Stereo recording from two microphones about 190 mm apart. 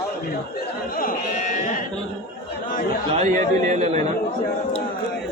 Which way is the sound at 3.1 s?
35° right (ahead or behind).